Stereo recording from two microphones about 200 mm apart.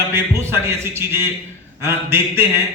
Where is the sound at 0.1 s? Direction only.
15° right (ahead or behind).